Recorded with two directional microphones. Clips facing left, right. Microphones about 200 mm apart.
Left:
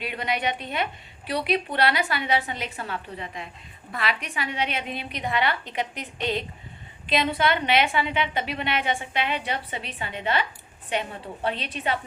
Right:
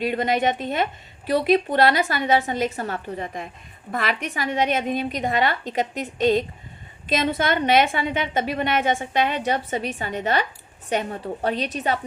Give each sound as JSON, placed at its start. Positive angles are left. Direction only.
{"t": 0.0, "sound": "a woman's voice", "side_deg": -45}